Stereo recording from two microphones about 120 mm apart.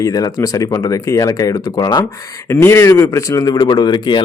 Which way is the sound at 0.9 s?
30° left (ahead or behind).